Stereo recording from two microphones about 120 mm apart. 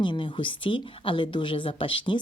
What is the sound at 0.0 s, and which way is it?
A woman's voice, 40° left (ahead or behind).